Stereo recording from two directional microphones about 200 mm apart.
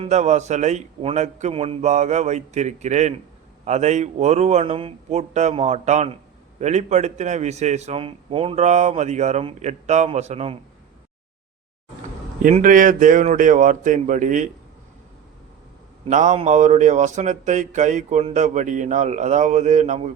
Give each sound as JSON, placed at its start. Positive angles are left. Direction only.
{"t": 0.0, "sound": "a man's voice", "side_deg": -35}
{"t": 12.4, "sound": "a man's voice", "side_deg": -40}
{"t": 16.0, "sound": "a man's voice", "side_deg": -35}